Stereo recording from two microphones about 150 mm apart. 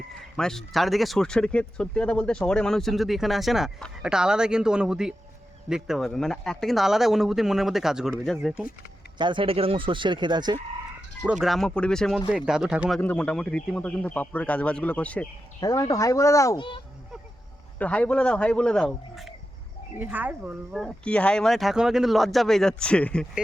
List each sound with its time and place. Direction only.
0.3 s speech: 5° left (ahead or behind)
9.1 s speech: 30° right (ahead or behind)
11.3 s speech: centre (ahead or behind)
13.0 s speech: 10° left (ahead or behind)
15.6 s speech: 25° left (ahead or behind)
16.6 s a child's voice: 35° left (ahead or behind)
17.7 s speech: 10° left (ahead or behind)
20.0 s speech: 10° right (ahead or behind); by 23.2 s 5° left (ahead or behind)